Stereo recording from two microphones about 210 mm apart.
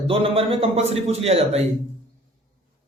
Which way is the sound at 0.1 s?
25° right (ahead or behind).